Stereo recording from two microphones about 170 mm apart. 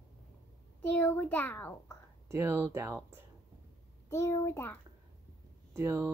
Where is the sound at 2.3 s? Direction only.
15° right (ahead or behind).